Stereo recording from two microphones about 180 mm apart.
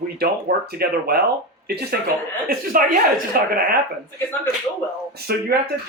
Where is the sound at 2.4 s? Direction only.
50° right (ahead or behind).